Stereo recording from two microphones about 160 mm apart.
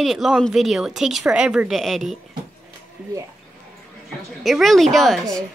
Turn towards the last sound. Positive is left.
turn(degrees=0)  # may be behind; listen again after turning